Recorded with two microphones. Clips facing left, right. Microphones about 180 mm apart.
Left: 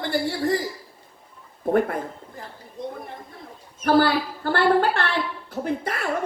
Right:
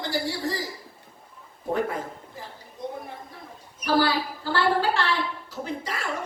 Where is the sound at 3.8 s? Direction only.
55° left (ahead or behind).